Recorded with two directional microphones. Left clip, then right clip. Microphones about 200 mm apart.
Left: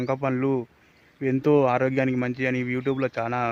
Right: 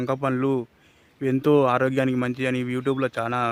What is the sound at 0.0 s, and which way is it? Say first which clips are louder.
Speech: right 1 dB; 5° right (ahead or behind).